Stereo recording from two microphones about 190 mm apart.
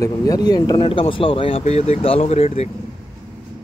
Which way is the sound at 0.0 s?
20° left (ahead or behind).